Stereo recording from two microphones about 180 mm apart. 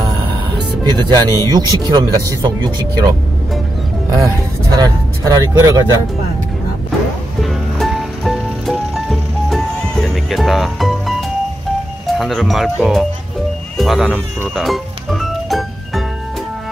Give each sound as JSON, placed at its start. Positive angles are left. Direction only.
{"t": 0.8, "sound": "speech", "side_deg": -25}
{"t": 4.2, "sound": "speech", "side_deg": -20}
{"t": 7.4, "sound": "music", "side_deg": 0}
{"t": 12.2, "sound": "speech", "side_deg": 0}
{"t": 13.7, "sound": "music", "side_deg": 0}